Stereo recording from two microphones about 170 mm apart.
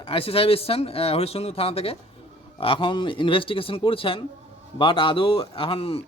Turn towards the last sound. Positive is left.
turn(degrees=35)  # may be behind; listen again after turning